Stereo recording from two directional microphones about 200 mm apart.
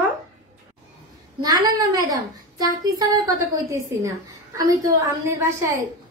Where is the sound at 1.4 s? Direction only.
20° right (ahead or behind).